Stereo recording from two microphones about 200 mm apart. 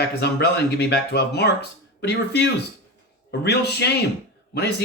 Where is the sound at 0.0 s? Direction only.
55° left (ahead or behind).